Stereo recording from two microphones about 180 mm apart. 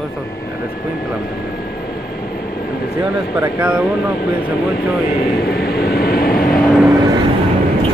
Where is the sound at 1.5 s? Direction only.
60° left (ahead or behind).